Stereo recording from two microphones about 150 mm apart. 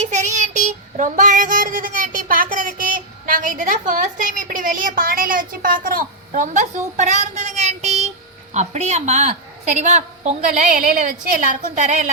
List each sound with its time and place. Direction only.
0.0 s child singing: 50° right (ahead or behind)
8.5 s a woman's voice: 50° right (ahead or behind)